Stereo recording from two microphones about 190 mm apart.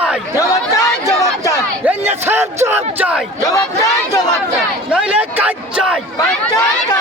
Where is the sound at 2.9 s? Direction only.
5° right (ahead or behind).